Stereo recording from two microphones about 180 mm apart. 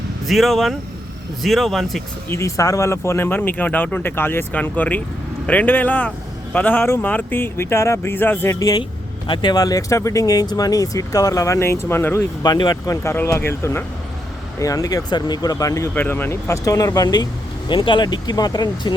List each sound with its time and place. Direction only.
0.3 s speech: centre (ahead or behind)
2.3 s speech: 15° left (ahead or behind)